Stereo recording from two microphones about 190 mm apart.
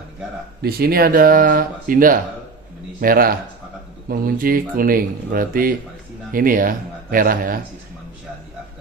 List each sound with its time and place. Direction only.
0.6 s speech: 55° right (ahead or behind)